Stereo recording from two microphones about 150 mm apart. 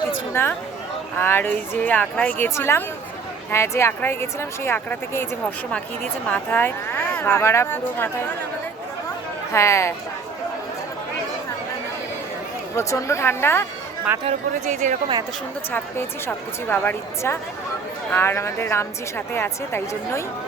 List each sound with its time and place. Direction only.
0.4 s a woman's voice: 15° left (ahead or behind)
6.2 s a woman's voice: 10° left (ahead or behind)
9.5 s speech: 20° left (ahead or behind)
12.7 s a woman's voice: 20° left (ahead or behind)
14.3 s speech: 55° right (ahead or behind)
15.7 s a woman's voice: 15° left (ahead or behind)